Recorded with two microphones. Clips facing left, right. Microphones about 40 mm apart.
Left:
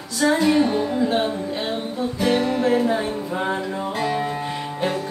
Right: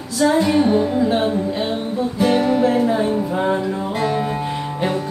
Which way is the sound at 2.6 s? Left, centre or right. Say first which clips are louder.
Right 3 dB; centre.